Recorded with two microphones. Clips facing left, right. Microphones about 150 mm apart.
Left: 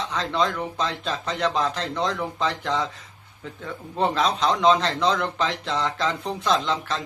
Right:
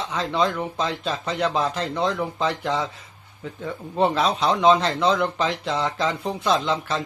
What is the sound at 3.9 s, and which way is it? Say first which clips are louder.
Speech: right 2 dB; 5° right (ahead or behind).